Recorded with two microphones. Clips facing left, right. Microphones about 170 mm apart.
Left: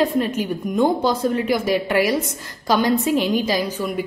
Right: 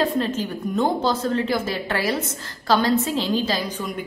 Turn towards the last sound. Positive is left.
turn(degrees=15)  # may be behind; listen again after turning